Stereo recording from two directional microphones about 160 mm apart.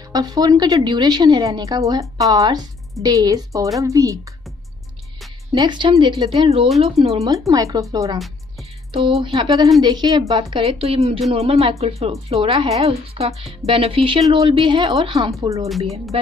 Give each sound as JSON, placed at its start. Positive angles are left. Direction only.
{"t": 0.1, "sound": "a woman's voice", "side_deg": -25}
{"t": 5.5, "sound": "speech", "side_deg": -30}
{"t": 7.2, "sound": "a woman's voice", "side_deg": -20}
{"t": 15.4, "sound": "a woman's voice", "side_deg": -20}
{"t": 15.8, "sound": "speech", "side_deg": -40}